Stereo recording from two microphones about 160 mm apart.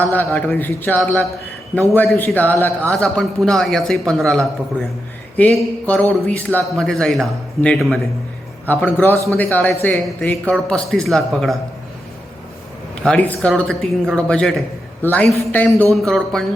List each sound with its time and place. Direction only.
0.0 s a man's voice: 10° left (ahead or behind)
2.1 s a man's voice: 10° left (ahead or behind)
9.1 s a man's voice: 20° right (ahead or behind)
9.4 s a man's voice: 10° left (ahead or behind)
13.0 s a man's voice: 5° left (ahead or behind)